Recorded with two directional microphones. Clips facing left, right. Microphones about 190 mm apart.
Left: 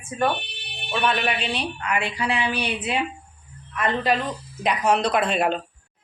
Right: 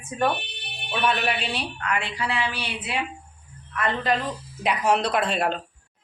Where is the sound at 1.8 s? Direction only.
10° left (ahead or behind).